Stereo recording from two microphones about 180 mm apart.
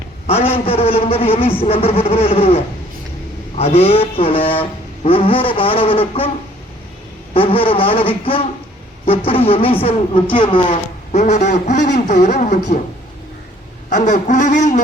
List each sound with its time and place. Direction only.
0.5 s speech: 35° left (ahead or behind)
7.3 s speech: 30° left (ahead or behind)
13.9 s a sound: 40° left (ahead or behind)